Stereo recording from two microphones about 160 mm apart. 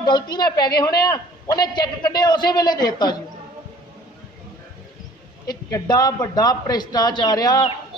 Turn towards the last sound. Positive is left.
turn(degrees=25)  # may be behind; listen again after turning